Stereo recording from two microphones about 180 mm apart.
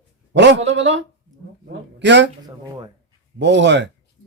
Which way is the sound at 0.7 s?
90° right.